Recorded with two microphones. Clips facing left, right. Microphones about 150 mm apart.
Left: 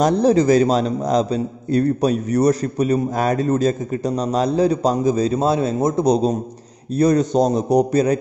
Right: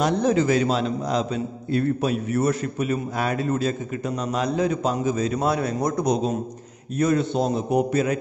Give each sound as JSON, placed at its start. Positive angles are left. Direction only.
{"t": 0.0, "sound": "a man's voice", "side_deg": 35}